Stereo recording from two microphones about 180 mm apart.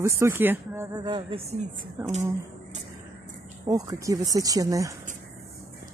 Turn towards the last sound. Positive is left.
turn(degrees=-20)  # may be behind; listen again after turning